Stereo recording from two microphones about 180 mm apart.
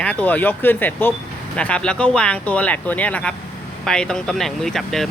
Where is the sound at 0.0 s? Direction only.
10° left (ahead or behind).